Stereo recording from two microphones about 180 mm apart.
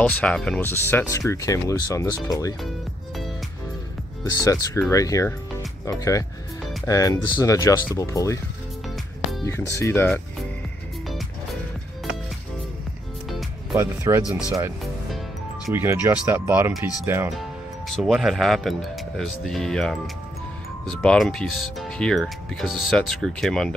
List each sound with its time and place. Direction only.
0.0 s speech: 5° left (ahead or behind)
4.2 s speech: 20° left (ahead or behind)
8.8 s music: centre (ahead or behind)
9.4 s speech: 15° left (ahead or behind)
13.7 s speech: 15° right (ahead or behind)
15.7 s speech: 15° right (ahead or behind)
17.4 s speech: centre (ahead or behind)